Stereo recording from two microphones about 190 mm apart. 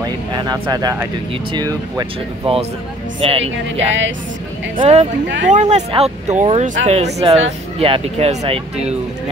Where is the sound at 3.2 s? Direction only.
30° right (ahead or behind).